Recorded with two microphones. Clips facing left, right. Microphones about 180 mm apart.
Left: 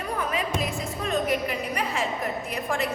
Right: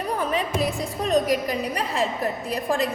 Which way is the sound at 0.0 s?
35° right (ahead or behind).